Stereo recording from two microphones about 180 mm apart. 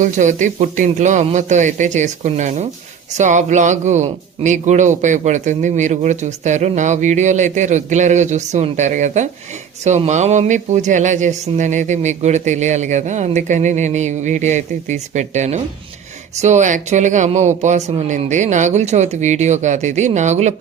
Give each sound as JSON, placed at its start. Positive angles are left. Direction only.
{"t": 0.0, "sound": "speech", "side_deg": -45}